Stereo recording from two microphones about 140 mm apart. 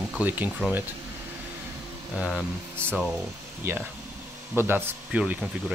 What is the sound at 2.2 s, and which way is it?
Speech, 5° right (ahead or behind).